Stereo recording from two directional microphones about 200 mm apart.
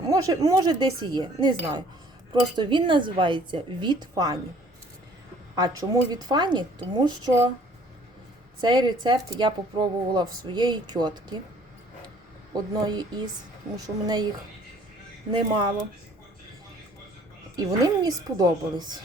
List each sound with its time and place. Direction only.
0.1 s speech: 15° right (ahead or behind)
5.5 s speech: 20° right (ahead or behind)
8.6 s speech: 20° right (ahead or behind)
12.5 s speech: 20° right (ahead or behind)
15.3 s speech: 25° right (ahead or behind)
17.6 s speech: 20° right (ahead or behind)